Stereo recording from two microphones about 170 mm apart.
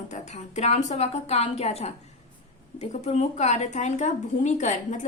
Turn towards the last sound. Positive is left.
turn(degrees=45)  # may be behind; listen again after turning